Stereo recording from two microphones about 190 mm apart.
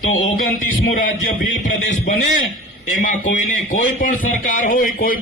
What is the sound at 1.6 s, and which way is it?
Speech, 40° left (ahead or behind).